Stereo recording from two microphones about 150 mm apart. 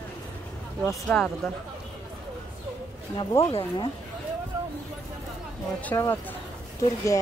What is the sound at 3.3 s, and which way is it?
Speech, 20° left (ahead or behind).